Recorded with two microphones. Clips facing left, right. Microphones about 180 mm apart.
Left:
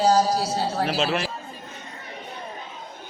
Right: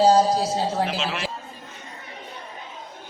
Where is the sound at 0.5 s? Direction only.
20° right (ahead or behind).